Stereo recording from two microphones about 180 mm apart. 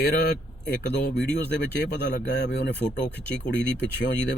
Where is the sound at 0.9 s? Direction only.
75° left (ahead or behind).